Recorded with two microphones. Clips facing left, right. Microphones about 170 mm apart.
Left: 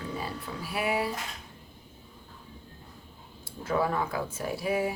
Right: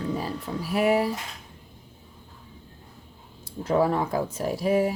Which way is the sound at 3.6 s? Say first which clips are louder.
Right 5 dB; 35° right (ahead or behind).